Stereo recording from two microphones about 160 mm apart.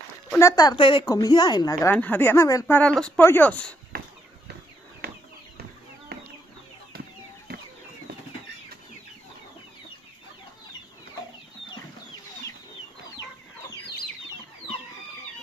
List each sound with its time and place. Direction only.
0.4 s a woman's voice: 20° left (ahead or behind)
1.9 s speech: 10° left (ahead or behind)
2.6 s speech: 5° left (ahead or behind)
5.0 s bird flight: 80° right
6.1 s chicken: 75° right (ahead or behind)